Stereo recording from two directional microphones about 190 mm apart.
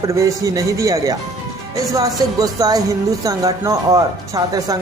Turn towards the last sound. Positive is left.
turn(degrees=-20)  # may be behind; listen again after turning